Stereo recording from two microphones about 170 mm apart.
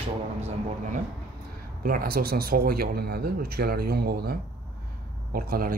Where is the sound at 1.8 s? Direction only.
60° right (ahead or behind).